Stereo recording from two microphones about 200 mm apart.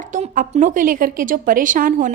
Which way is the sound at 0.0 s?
40° right (ahead or behind).